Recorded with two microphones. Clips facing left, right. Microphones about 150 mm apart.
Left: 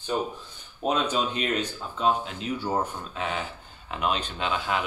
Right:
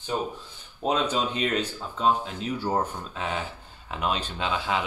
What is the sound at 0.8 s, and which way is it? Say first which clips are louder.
Speech: even; 30° right (ahead or behind).